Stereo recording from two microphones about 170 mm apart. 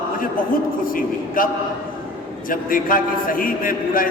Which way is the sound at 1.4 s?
55° left (ahead or behind).